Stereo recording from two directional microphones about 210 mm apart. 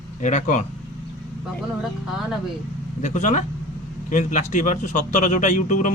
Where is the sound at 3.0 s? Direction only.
35° left (ahead or behind).